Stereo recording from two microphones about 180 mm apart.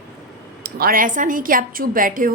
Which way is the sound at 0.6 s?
55° right (ahead or behind).